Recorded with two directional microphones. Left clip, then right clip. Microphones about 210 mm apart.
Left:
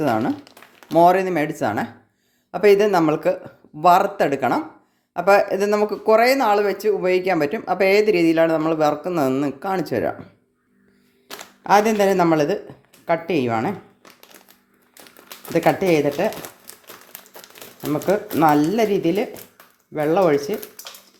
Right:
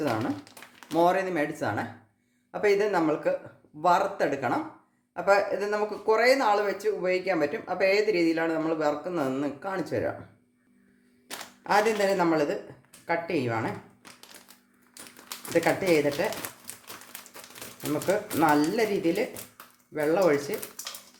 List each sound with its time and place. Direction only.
0.4 s a sound: 5° left (ahead or behind)
0.9 s speech: 35° left (ahead or behind)
11.6 s speech: 40° left (ahead or behind)
15.5 s speech: 40° left (ahead or behind)
17.6 s typewriter: centre (ahead or behind)
18.0 s speech: 35° left (ahead or behind)